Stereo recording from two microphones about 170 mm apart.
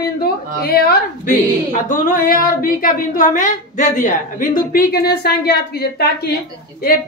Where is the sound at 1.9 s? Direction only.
50° left (ahead or behind).